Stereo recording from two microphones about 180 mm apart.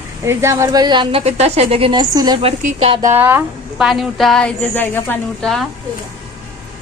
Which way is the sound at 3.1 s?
10° right (ahead or behind).